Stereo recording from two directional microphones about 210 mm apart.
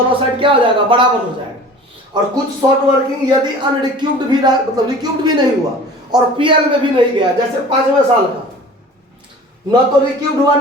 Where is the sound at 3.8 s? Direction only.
20° right (ahead or behind).